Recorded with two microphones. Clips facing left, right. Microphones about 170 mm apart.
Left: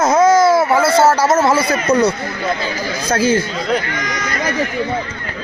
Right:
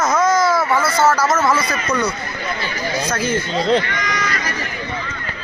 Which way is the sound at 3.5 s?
25° right (ahead or behind).